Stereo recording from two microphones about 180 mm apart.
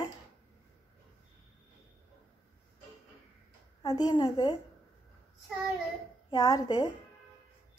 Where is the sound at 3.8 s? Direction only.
20° left (ahead or behind).